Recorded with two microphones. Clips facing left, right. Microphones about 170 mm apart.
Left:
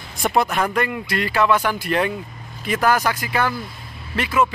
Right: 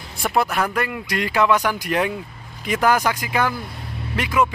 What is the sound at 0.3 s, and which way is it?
Speech, 5° right (ahead or behind).